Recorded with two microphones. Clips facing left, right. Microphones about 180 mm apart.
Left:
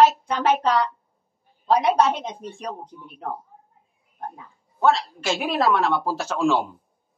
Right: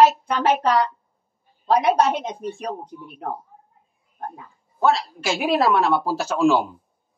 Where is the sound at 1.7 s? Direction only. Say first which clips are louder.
Right 1 dB; 50° right (ahead or behind).